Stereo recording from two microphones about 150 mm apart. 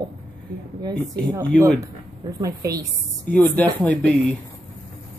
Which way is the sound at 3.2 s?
10° left (ahead or behind).